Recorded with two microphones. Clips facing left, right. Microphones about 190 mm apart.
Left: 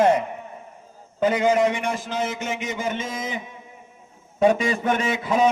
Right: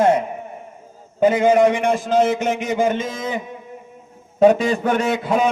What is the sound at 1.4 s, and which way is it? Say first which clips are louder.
A man's voice: right 5 dB; 55° right (ahead or behind).